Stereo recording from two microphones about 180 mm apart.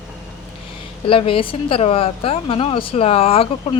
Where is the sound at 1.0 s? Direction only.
30° left (ahead or behind).